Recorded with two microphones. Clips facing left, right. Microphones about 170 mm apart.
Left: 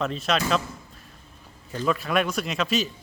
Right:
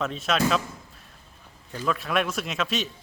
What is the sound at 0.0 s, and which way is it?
Speech, centre (ahead or behind).